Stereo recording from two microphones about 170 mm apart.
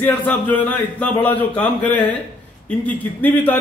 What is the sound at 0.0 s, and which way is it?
Speech, 10° left (ahead or behind).